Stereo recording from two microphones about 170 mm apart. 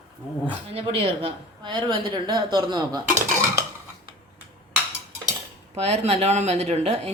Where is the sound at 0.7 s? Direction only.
35° right (ahead or behind).